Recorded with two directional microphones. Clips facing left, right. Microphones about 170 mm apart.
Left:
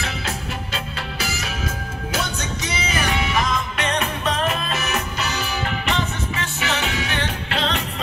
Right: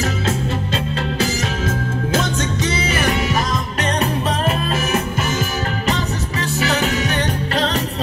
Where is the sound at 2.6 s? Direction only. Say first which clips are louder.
Right 4 dB; 40° right (ahead or behind).